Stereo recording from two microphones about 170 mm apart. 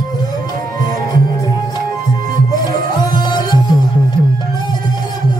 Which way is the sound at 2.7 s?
25° left (ahead or behind).